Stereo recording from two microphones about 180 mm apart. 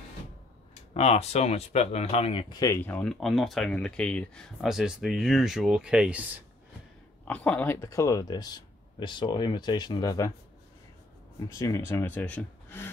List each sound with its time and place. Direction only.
0.9 s speech: 35° left (ahead or behind)
2.6 s speech: 15° left (ahead or behind); by 6.2 s 5° right (ahead or behind)
7.2 s speech: 10° left (ahead or behind)
11.3 s speech: 15° left (ahead or behind)